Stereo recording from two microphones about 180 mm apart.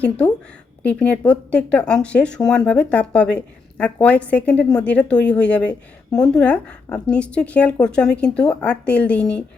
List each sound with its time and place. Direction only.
0.8 s speech: 5° left (ahead or behind)